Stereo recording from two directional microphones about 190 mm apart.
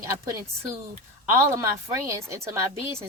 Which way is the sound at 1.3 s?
15° right (ahead or behind).